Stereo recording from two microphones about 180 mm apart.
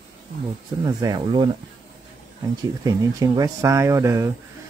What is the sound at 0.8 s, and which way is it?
Speech, 20° right (ahead or behind).